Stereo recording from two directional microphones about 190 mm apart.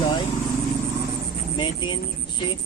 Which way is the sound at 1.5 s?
25° left (ahead or behind).